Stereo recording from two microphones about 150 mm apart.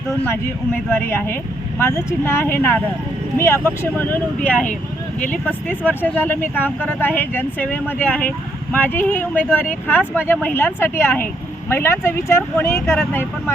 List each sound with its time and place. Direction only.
0.9 s speech: 15° left (ahead or behind)